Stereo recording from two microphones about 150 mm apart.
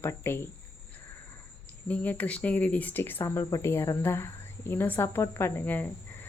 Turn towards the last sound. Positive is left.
turn(degrees=10)  # may be behind; listen again after turning